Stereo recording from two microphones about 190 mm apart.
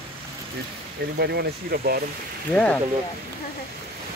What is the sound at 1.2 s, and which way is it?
Speech, 60° right (ahead or behind).